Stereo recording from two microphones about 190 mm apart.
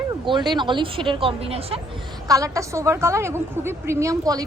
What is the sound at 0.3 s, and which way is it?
A woman's voice, 25° right (ahead or behind).